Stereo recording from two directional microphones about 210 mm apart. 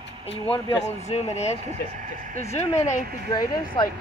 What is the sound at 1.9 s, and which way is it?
Speech, 40° right (ahead or behind).